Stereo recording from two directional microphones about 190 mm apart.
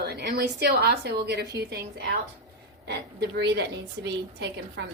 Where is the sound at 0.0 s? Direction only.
60° right (ahead or behind).